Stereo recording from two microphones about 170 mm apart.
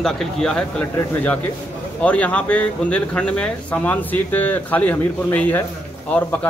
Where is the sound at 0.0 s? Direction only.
5° left (ahead or behind).